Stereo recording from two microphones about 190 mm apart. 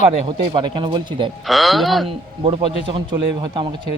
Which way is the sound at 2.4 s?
25° right (ahead or behind).